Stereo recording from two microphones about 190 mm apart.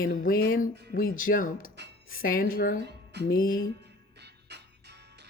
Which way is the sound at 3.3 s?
50° left (ahead or behind).